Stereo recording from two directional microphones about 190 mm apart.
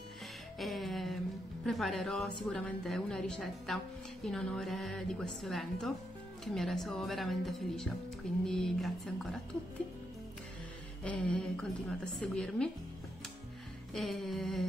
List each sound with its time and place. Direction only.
0.6 s music: centre (ahead or behind)
1.7 s a woman's voice: centre (ahead or behind)
11.1 s a woman's voice: 5° left (ahead or behind)
13.9 s a woman's voice: centre (ahead or behind)